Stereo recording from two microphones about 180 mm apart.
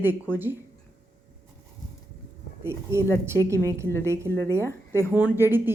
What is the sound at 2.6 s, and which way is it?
Speech, 15° right (ahead or behind).